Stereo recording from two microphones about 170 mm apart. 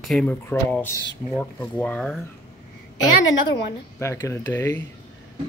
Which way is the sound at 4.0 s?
15° left (ahead or behind).